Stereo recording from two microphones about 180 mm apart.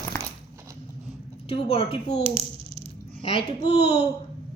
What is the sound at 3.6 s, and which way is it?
Speech, 35° left (ahead or behind).